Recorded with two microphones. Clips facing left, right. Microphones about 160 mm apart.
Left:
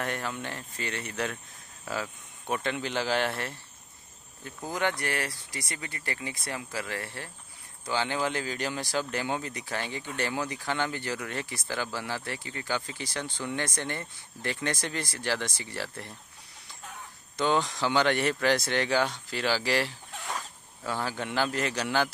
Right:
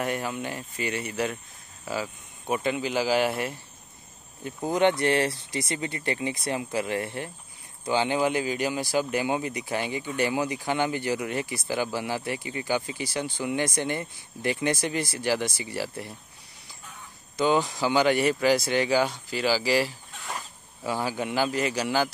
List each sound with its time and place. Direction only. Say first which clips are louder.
0.0 s speech: right 4 dB; 10° right (ahead or behind)
4.5 s speech: right 8 dB; 20° right (ahead or behind)
17.4 s speech: right 3 dB; 5° right (ahead or behind)